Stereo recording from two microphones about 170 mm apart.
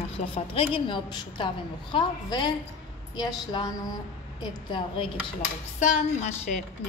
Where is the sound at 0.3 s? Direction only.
30° left (ahead or behind).